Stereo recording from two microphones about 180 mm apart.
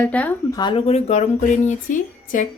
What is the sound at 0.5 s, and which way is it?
A woman's voice, 25° left (ahead or behind).